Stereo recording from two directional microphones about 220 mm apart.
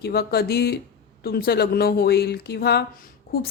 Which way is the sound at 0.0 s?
45° left (ahead or behind).